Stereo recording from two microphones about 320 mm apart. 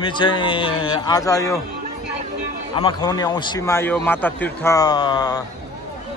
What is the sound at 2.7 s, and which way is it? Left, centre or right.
A man's voice, centre.